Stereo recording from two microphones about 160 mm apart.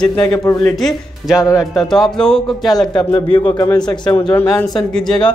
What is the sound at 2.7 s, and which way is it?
A man's voice, 25° left (ahead or behind).